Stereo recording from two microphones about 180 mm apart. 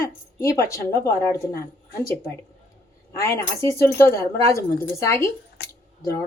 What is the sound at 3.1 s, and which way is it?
A woman's voice, 15° left (ahead or behind).